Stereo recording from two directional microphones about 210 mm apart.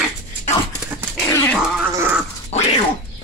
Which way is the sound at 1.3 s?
5° left (ahead or behind).